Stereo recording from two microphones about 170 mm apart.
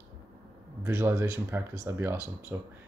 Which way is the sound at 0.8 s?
15° right (ahead or behind).